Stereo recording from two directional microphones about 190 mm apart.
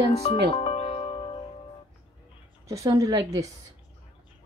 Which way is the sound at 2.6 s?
15° right (ahead or behind).